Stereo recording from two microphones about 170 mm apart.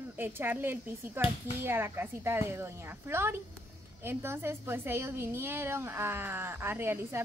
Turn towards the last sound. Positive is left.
turn(degrees=-15)  # may be behind; listen again after turning